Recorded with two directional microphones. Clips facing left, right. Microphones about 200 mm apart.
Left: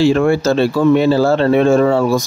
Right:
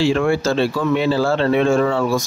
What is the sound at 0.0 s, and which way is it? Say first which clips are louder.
Speech: left 4 dB; 40° left (ahead or behind).